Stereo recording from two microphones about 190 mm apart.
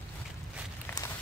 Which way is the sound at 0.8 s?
15° left (ahead or behind).